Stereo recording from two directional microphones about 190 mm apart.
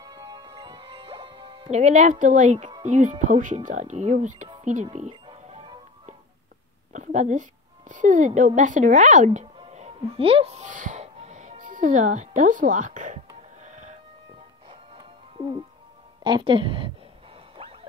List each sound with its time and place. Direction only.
0.0 s music: 20° right (ahead or behind); by 2.7 s 40° right (ahead or behind)
2.8 s speech: 40° right (ahead or behind)
5.2 s music: 30° right (ahead or behind)
6.9 s a woman's voice: 40° right (ahead or behind)
14.7 s music: 25° right (ahead or behind)
16.3 s a woman's voice: 25° right (ahead or behind)
17.6 s a sound: 30° right (ahead or behind)